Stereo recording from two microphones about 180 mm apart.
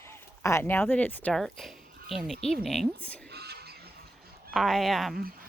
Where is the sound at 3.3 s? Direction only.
60° right (ahead or behind).